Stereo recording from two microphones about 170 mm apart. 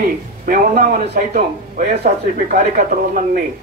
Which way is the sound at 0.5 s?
50° right (ahead or behind).